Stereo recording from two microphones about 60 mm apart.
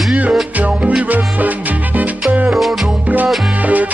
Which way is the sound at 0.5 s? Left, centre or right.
Right.